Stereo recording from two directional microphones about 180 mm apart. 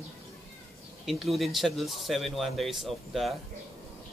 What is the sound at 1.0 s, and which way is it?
Speech, centre (ahead or behind).